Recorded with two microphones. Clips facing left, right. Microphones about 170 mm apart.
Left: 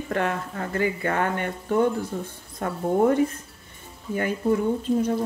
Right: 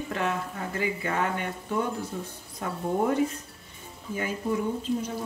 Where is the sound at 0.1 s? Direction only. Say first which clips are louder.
Left 5 dB; 55° left (ahead or behind).